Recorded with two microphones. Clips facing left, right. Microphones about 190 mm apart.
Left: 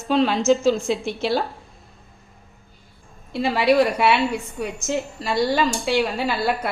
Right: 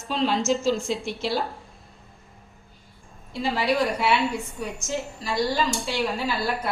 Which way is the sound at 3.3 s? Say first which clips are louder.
Left 6 dB; 65° left (ahead or behind).